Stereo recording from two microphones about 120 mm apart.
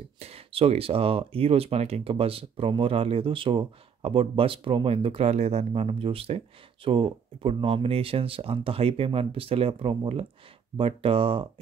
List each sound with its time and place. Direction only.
0.2 s speech: 55° right (ahead or behind)